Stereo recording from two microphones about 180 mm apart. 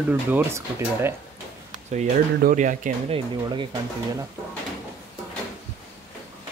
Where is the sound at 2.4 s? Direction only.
45° right (ahead or behind).